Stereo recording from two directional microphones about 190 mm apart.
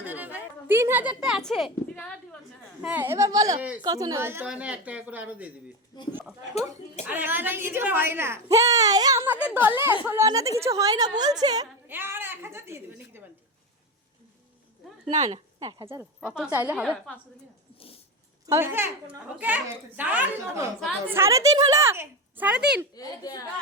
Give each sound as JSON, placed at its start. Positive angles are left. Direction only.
{"t": 0.0, "sound": "a sound", "side_deg": -10}
{"t": 2.8, "sound": "a woman's voice", "side_deg": -10}
{"t": 6.5, "sound": "a woman's voice", "side_deg": 35}
{"t": 7.1, "sound": "a woman's voice", "side_deg": -10}
{"t": 11.2, "sound": "a sound", "side_deg": -20}
{"t": 15.0, "sound": "speech", "side_deg": -35}
{"t": 15.5, "sound": "a woman's voice", "side_deg": -20}
{"t": 18.4, "sound": "a woman's voice", "side_deg": -15}
{"t": 23.0, "sound": "speech", "side_deg": 20}